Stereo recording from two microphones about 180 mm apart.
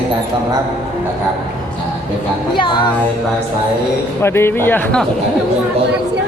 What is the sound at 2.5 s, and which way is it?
Music, 25° left (ahead or behind).